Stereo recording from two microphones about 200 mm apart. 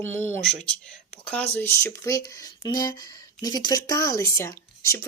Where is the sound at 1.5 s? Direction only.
10° left (ahead or behind).